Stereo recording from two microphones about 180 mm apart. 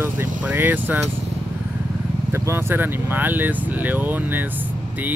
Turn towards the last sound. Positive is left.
turn(degrees=-10)  # may be behind; listen again after turning